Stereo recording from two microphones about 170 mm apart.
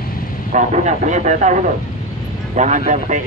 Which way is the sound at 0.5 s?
45° right (ahead or behind).